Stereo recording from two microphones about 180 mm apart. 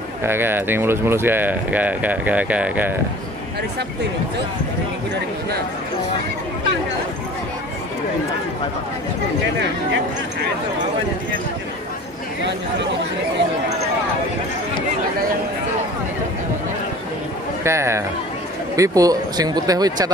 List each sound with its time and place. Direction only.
0.2 s speech: 10° right (ahead or behind)
17.6 s speech: 15° right (ahead or behind)